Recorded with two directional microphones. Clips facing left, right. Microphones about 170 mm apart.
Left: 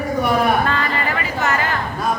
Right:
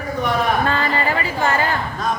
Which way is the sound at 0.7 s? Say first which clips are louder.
Right 1 dB; 30° right (ahead or behind).